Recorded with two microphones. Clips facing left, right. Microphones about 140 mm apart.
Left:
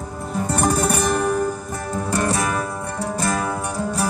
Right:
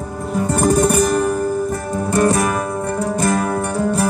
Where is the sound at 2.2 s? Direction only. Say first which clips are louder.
Right 7 dB; 50° right (ahead or behind).